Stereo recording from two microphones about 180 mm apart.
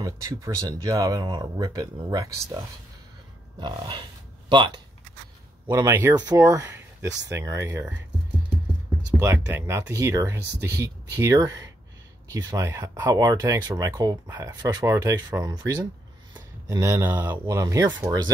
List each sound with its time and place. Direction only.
0.0 s speech: 15° right (ahead or behind)
9.2 s speech: 15° right (ahead or behind)